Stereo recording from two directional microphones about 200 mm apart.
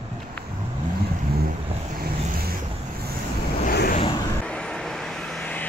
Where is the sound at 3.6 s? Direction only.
45° left (ahead or behind).